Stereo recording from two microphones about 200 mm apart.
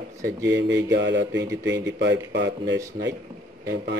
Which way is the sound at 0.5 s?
60° right (ahead or behind).